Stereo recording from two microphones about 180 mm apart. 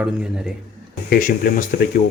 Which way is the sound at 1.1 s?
50° left (ahead or behind).